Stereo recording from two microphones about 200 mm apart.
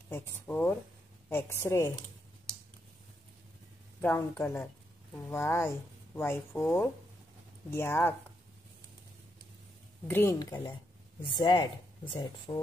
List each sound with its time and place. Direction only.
0.1 s speech: 10° left (ahead or behind)
4.0 s speech: 10° left (ahead or behind)
10.0 s speech: 10° left (ahead or behind)
11.2 s a woman's voice: 20° left (ahead or behind)